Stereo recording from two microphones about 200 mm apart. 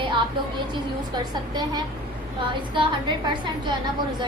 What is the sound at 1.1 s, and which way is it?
A woman's voice, 20° right (ahead or behind).